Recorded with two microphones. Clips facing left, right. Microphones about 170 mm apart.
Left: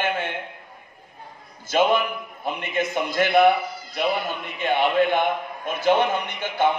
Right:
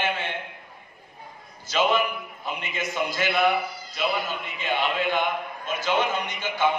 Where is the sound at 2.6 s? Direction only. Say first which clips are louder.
Left 4 dB; 55° left (ahead or behind).